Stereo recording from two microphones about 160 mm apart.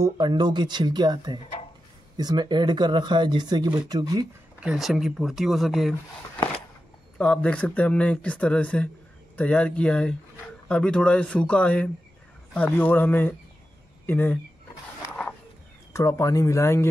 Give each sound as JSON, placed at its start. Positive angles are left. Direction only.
{"t": 0.0, "sound": "speech", "side_deg": -25}
{"t": 4.6, "sound": "speech", "side_deg": 0}
{"t": 7.2, "sound": "speech", "side_deg": 5}
{"t": 15.9, "sound": "speech", "side_deg": 15}